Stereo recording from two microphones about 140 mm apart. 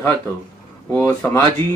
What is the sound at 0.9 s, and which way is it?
Speech, 15° left (ahead or behind).